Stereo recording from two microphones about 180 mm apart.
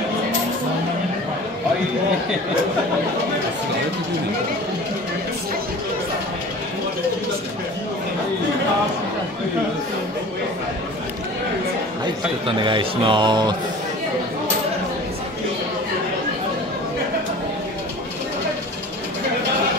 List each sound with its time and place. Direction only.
12.4 s a man's voice: 25° right (ahead or behind)